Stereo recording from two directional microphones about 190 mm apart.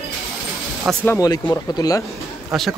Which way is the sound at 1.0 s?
15° left (ahead or behind).